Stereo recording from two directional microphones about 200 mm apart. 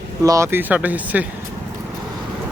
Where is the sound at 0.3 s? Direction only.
15° right (ahead or behind).